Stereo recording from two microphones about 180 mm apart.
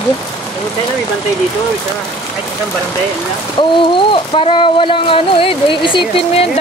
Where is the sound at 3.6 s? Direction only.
30° left (ahead or behind).